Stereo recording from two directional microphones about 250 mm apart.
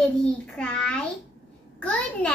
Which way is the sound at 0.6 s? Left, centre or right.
Centre.